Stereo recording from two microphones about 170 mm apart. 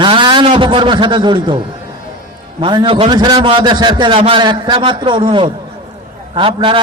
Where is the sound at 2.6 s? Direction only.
30° right (ahead or behind).